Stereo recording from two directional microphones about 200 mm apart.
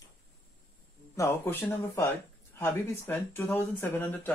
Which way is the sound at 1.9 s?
10° left (ahead or behind).